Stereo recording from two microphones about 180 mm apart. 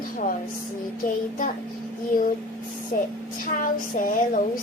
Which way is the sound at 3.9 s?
50° left (ahead or behind).